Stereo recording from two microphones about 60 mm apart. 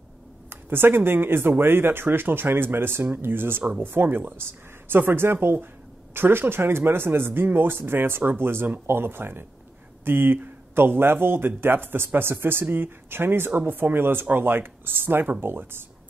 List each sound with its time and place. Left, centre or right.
0.5 s speech: right